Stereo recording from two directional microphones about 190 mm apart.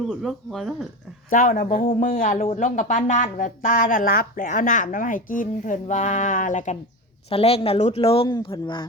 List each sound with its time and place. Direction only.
0.1 s speech: centre (ahead or behind)
1.3 s speech: 45° left (ahead or behind)
7.3 s speech: 30° left (ahead or behind)